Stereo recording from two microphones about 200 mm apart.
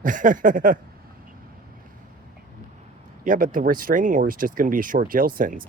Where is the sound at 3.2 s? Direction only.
40° right (ahead or behind).